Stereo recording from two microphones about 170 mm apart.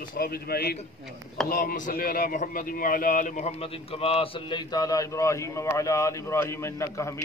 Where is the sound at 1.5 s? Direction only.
55° left (ahead or behind).